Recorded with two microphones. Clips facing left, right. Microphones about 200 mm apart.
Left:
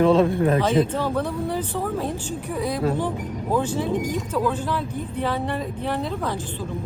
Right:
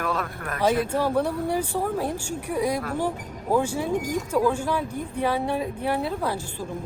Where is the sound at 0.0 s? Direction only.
25° left (ahead or behind).